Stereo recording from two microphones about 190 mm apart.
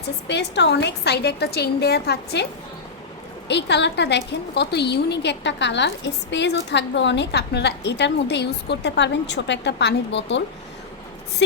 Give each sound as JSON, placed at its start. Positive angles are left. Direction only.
{"t": 0.0, "sound": "a woman's voice", "side_deg": 60}
{"t": 3.5, "sound": "a woman's voice", "side_deg": 65}